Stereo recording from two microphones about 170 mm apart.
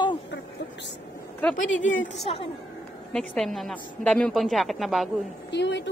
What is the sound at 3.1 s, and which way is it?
A woman's voice, 5° left (ahead or behind).